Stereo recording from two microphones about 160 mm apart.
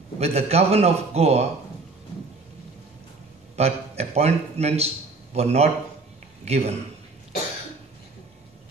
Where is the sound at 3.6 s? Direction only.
40° right (ahead or behind).